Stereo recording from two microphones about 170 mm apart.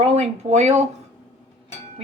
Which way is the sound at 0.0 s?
40° right (ahead or behind).